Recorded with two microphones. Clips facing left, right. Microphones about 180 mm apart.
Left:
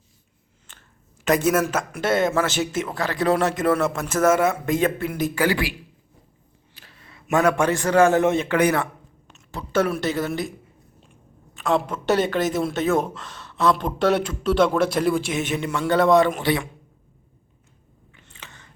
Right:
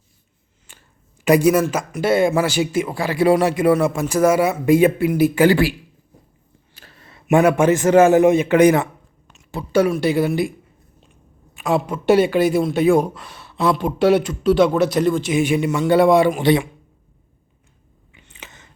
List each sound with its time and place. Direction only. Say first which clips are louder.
2.0 s a man's voice: right 5 dB; 5° right (ahead or behind)
5.3 s speech: right 6 dB; 25° right (ahead or behind)
6.7 s a sound: right 3 dB; 45° right (ahead or behind)
7.3 s a man's voice: right 5 dB; 20° right (ahead or behind)
9.5 s a man's voice: right 5 dB; 10° right (ahead or behind)
11.6 s a man's voice: right 4 dB; 10° right (ahead or behind)
15.3 s a man's voice: right 7 dB; 10° right (ahead or behind)
16.4 s speech: right 7 dB; 20° right (ahead or behind)
18.3 s a sound: right 3 dB; 15° right (ahead or behind)